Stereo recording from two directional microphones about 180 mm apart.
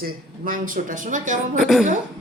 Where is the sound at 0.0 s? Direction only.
50° right (ahead or behind).